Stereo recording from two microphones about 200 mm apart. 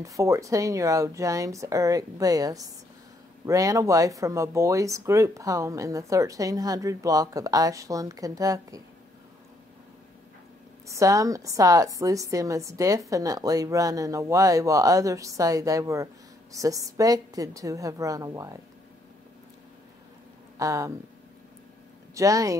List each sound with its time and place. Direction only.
0.0 s speech: 15° right (ahead or behind)
10.9 s speech: 15° right (ahead or behind)
20.5 s speech: 15° right (ahead or behind)
22.1 s speech: 15° right (ahead or behind)